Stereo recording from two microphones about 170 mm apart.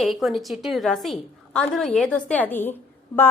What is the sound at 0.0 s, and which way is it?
A woman's voice, centre (ahead or behind).